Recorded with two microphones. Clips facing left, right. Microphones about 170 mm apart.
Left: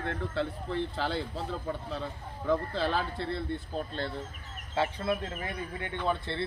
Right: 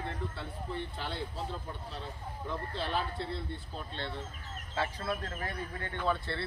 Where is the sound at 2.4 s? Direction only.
90° left.